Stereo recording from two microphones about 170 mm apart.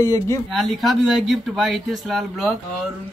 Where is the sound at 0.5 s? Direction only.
Centre (ahead or behind).